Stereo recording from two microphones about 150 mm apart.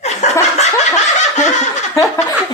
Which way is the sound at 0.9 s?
50° left (ahead or behind).